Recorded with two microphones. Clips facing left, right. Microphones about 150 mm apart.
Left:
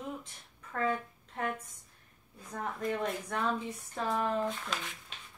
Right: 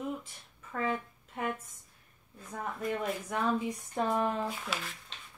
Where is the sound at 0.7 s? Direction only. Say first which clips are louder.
Left 1 dB; 5° right (ahead or behind).